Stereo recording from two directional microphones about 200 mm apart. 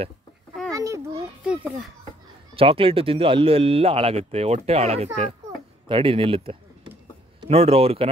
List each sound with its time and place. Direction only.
0.7 s a sound: 15° right (ahead or behind)
1.4 s a child's voice: 5° right (ahead or behind)
2.5 s speech: 25° right (ahead or behind)